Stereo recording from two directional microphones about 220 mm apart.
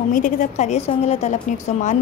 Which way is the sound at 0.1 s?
35° left (ahead or behind).